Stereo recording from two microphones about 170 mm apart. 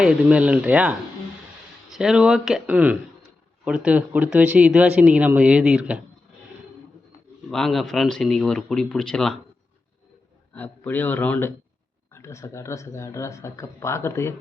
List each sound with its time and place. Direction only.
0.0 s speech: 5° right (ahead or behind)
7.5 s speech: centre (ahead or behind)
10.5 s speech: 10° left (ahead or behind)